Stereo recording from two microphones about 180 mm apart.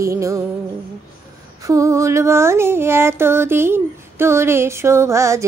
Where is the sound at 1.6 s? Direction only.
15° right (ahead or behind).